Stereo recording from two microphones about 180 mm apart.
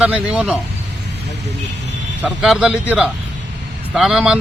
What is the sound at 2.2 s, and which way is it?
A man's voice, 5° right (ahead or behind).